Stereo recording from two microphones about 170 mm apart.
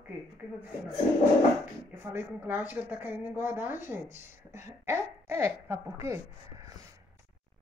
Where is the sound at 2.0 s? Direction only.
15° right (ahead or behind).